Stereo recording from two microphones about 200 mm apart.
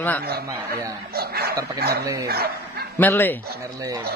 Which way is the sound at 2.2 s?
50° right (ahead or behind).